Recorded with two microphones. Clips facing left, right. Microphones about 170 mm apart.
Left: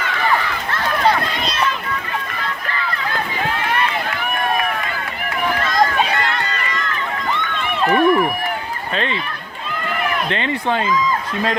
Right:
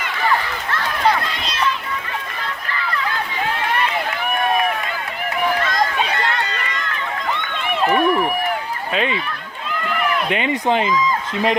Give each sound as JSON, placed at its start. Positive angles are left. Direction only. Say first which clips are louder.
{"t": 7.9, "sound": "run", "louder": "left 3 dB", "side_deg": -5}
{"t": 8.9, "sound": "speech", "louder": "right 2 dB", "side_deg": -10}
{"t": 10.2, "sound": "speech", "louder": "right 2 dB", "side_deg": -15}